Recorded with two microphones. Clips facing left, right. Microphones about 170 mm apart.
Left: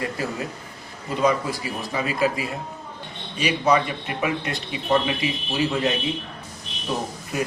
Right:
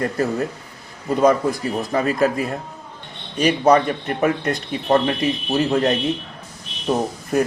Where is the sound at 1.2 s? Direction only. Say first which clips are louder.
Right 5 dB; 50° right (ahead or behind).